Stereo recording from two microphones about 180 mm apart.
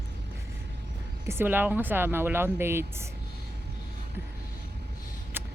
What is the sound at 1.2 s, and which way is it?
Speech, 15° right (ahead or behind).